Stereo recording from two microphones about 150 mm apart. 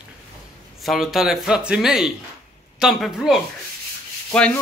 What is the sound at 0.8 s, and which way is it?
Speech, centre (ahead or behind).